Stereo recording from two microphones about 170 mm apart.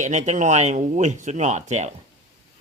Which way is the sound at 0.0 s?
45° right (ahead or behind).